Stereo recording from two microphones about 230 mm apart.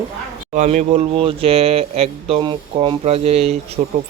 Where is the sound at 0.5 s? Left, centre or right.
Right.